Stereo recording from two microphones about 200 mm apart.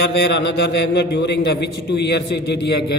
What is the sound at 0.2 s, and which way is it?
A man's voice, 60° left (ahead or behind).